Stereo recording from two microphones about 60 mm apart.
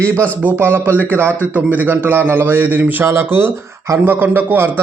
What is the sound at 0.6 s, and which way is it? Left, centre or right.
A man's voice, right.